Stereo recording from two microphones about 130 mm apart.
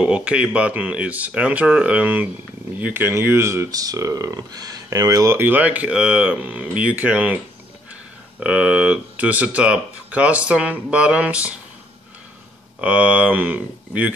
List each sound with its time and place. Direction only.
0.0 s speech: 10° right (ahead or behind)
8.4 s speech: 10° right (ahead or behind)
12.8 s speech: 10° right (ahead or behind)